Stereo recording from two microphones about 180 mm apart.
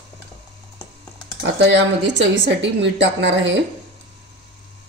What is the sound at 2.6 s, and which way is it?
Speech, 80° right.